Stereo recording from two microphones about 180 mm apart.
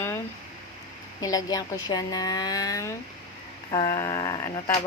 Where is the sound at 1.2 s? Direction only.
20° left (ahead or behind).